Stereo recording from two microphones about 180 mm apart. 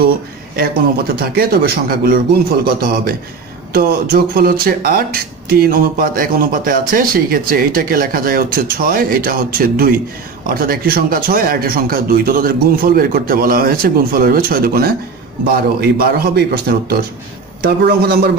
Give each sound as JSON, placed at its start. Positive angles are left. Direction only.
{"t": 0.6, "sound": "speech", "side_deg": -55}